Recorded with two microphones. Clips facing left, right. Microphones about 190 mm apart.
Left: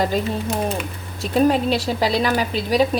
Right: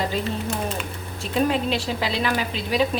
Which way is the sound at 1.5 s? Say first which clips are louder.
Left 5 dB; 40° left (ahead or behind).